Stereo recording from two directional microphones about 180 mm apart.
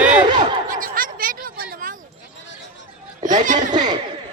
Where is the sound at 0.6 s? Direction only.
50° right (ahead or behind).